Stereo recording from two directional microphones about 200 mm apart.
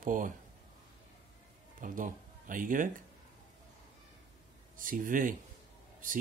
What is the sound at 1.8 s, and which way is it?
Speech, 40° right (ahead or behind).